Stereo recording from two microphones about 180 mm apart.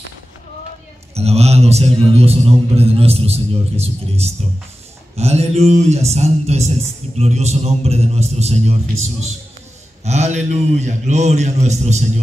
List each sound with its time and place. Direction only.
1.1 s a man's voice: 35° right (ahead or behind)
10.0 s a man's voice: 40° right (ahead or behind)